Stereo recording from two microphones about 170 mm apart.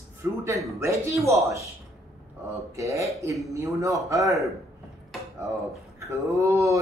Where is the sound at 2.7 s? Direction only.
20° right (ahead or behind).